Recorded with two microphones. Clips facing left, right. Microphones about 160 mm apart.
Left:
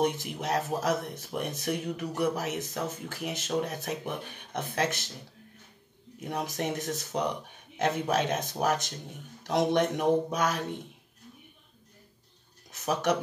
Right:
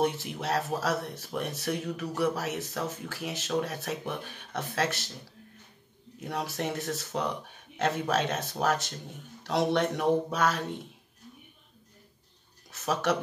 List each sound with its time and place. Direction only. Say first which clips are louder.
0.0 s speech: even; 15° left (ahead or behind)
6.2 s speech: left 1 dB; 15° left (ahead or behind)
12.8 s speech: left 1 dB; 15° left (ahead or behind)